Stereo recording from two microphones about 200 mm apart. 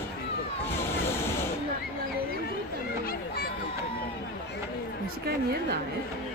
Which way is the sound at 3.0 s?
45° left (ahead or behind).